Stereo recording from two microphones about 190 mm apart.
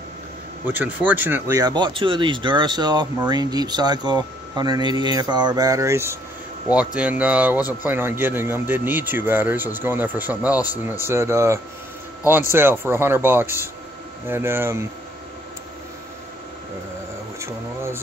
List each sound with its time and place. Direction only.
0.7 s speech: 10° right (ahead or behind)